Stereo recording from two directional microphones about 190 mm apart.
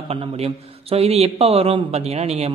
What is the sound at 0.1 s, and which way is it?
A man's voice, 30° right (ahead or behind).